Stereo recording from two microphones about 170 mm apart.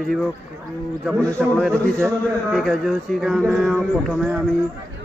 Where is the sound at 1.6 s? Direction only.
5° left (ahead or behind).